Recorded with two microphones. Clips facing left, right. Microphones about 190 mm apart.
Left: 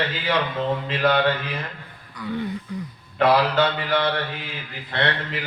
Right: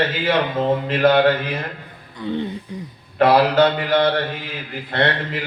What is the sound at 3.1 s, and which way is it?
A man's voice, 45° right (ahead or behind).